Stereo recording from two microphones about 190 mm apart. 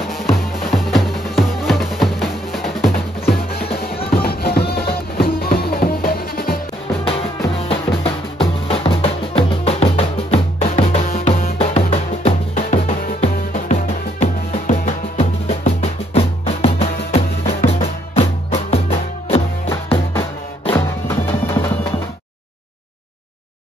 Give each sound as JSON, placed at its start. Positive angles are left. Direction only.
{"t": 0.7, "sound": "music", "side_deg": 0}
{"t": 3.3, "sound": "music", "side_deg": 55}
{"t": 7.1, "sound": "music", "side_deg": 30}
{"t": 20.7, "sound": "music", "side_deg": 15}